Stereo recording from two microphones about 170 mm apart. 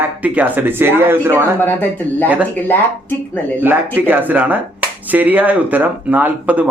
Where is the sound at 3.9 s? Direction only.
10° right (ahead or behind).